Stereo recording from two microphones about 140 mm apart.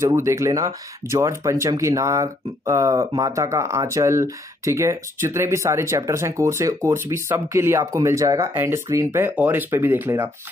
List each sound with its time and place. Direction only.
0.0 s speech: 20° right (ahead or behind)